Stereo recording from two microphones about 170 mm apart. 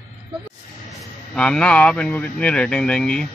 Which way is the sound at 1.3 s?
5° left (ahead or behind).